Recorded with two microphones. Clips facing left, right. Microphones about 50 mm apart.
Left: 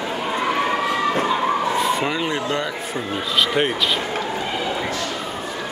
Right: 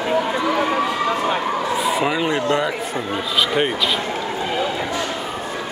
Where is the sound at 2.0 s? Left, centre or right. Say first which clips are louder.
Right 3 dB; centre.